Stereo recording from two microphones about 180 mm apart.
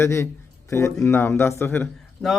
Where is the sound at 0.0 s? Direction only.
15° left (ahead or behind).